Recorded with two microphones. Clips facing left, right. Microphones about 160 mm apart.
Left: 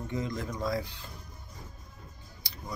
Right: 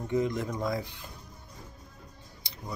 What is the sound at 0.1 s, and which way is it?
Speech, 20° right (ahead or behind).